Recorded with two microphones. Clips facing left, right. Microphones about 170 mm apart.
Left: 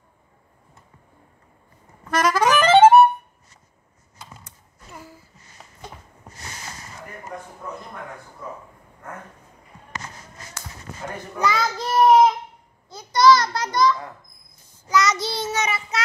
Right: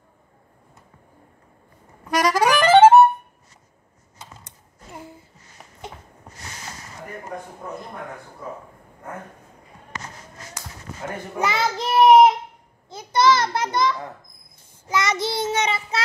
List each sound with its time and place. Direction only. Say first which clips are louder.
2.0 s music: even; 10° right (ahead or behind)
4.2 s typing: even; 25° right (ahead or behind)
11.3 s child singing: even; 25° right (ahead or behind)
12.9 s a sound: left 2 dB; 25° right (ahead or behind)
14.9 s child singing: left 2 dB; 25° right (ahead or behind)